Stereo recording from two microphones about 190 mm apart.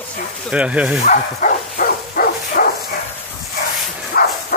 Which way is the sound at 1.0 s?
45° left (ahead or behind).